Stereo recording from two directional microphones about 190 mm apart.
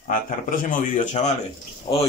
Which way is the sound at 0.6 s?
40° left (ahead or behind).